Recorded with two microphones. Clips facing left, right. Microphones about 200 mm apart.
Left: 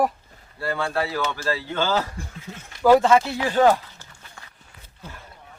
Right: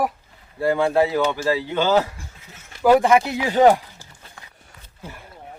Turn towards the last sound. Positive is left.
turn(degrees=-15)  # may be behind; listen again after turning